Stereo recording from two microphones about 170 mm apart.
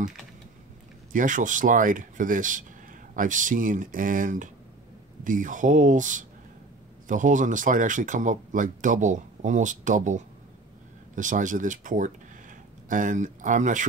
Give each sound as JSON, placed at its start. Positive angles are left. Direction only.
{"t": 1.1, "sound": "speech", "side_deg": -50}